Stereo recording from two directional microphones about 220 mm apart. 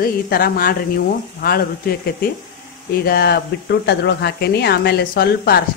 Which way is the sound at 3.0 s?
45° left (ahead or behind).